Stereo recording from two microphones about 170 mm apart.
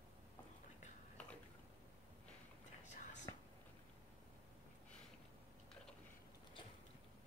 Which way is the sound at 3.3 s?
20° left (ahead or behind).